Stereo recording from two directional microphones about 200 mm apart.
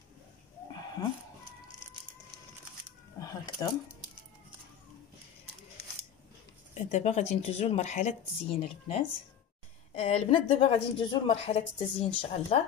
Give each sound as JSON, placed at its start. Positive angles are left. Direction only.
{"t": 3.6, "sound": "a woman's voice", "side_deg": 20}
{"t": 6.7, "sound": "a woman's voice", "side_deg": 35}